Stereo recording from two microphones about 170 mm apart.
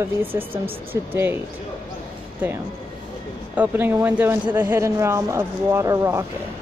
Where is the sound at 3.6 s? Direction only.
10° right (ahead or behind).